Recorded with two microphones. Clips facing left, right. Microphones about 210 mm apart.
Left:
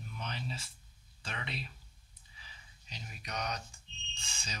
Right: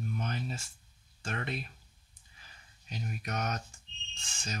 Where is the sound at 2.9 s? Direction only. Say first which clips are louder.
Right 6 dB; 50° right (ahead or behind).